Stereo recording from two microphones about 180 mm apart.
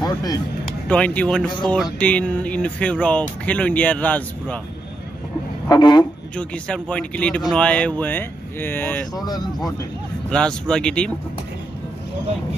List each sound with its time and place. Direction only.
0.0 s a sound: 20° left (ahead or behind)
0.8 s speech: 5° left (ahead or behind)
5.7 s speech: 25° left (ahead or behind)
6.3 s speech: 5° left (ahead or behind)
10.3 s speech: 5° left (ahead or behind)